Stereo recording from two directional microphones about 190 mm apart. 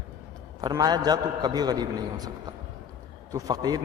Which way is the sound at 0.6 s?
20° right (ahead or behind).